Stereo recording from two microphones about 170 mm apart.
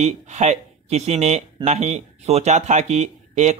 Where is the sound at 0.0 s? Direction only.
40° right (ahead or behind).